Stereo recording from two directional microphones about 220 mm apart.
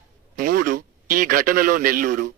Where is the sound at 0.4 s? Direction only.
40° right (ahead or behind).